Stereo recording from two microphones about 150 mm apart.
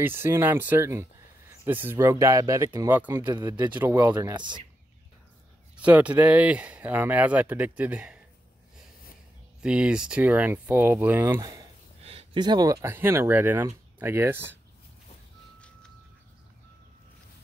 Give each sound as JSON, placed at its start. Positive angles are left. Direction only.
{"t": 0.0, "sound": "speech", "side_deg": -15}
{"t": 4.4, "sound": "speech", "side_deg": -30}
{"t": 5.8, "sound": "speech", "side_deg": -10}
{"t": 9.6, "sound": "speech", "side_deg": -5}
{"t": 12.0, "sound": "speech", "side_deg": -40}